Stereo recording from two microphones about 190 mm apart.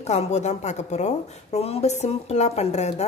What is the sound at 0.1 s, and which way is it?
A woman's voice, 35° left (ahead or behind).